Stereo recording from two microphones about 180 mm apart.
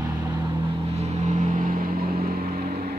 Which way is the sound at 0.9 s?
40° right (ahead or behind).